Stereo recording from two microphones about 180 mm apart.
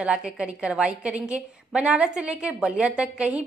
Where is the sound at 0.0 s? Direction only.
5° right (ahead or behind).